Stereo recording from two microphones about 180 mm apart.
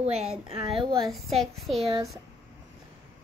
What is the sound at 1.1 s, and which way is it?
Speech, centre (ahead or behind).